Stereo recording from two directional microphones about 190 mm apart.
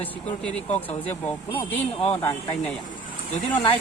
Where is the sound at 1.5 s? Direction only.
30° left (ahead or behind).